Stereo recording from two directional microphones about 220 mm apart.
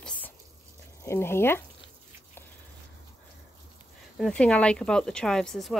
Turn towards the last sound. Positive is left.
turn(degrees=0)  # may be behind; listen again after turning